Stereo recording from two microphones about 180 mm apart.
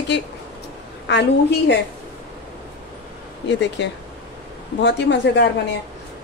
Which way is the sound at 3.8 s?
75° left (ahead or behind).